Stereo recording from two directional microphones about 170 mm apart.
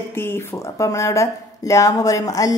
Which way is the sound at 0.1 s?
15° left (ahead or behind).